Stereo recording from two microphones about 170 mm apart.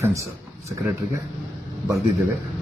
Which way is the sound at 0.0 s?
20° right (ahead or behind).